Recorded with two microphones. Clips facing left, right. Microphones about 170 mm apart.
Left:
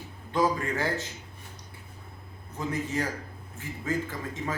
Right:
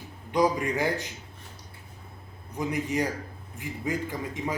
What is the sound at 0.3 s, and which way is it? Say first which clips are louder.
Speech: right 2 dB; 15° right (ahead or behind).